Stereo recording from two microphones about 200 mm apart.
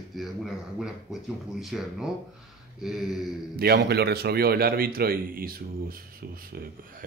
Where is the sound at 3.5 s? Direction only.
50° right (ahead or behind).